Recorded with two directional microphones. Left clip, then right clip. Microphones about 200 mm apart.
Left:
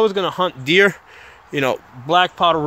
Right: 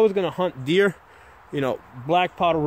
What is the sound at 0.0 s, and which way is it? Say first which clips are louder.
Speech: left 3 dB; 5° right (ahead or behind).